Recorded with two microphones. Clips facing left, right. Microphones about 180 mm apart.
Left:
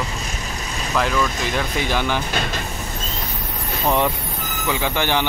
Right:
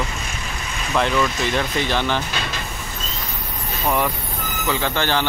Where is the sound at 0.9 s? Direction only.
Centre (ahead or behind).